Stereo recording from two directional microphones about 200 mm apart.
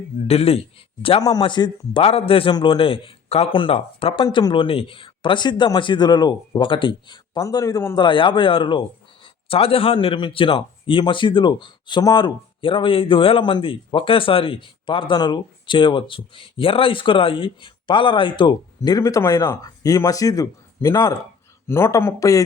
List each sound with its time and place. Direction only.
0.3 s a man's voice: 30° left (ahead or behind)